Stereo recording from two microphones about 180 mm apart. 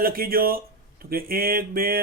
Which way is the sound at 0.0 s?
55° right (ahead or behind).